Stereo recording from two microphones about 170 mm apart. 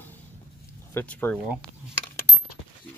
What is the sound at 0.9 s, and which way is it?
Speech, 10° left (ahead or behind).